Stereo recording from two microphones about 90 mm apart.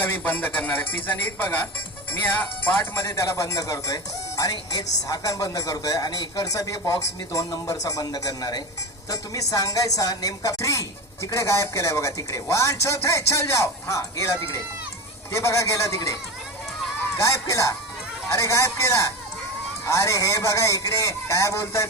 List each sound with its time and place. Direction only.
0.0 s a man's voice: 20° left (ahead or behind)
17.2 s speech: 35° left (ahead or behind)